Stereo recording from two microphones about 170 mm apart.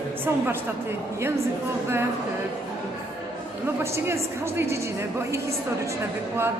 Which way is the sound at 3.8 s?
15° right (ahead or behind).